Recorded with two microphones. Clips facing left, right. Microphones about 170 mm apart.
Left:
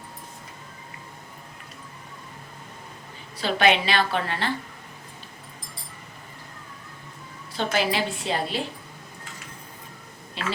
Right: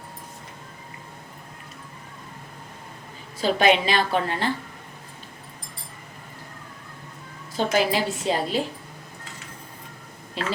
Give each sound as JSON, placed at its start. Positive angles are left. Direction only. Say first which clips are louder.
{"t": 3.4, "sound": "a woman's voice", "louder": "right 2 dB", "side_deg": -40}
{"t": 7.5, "sound": "a woman's voice", "louder": "right 3 dB", "side_deg": -45}
{"t": 10.4, "sound": "a woman's voice", "louder": "right 2 dB", "side_deg": -40}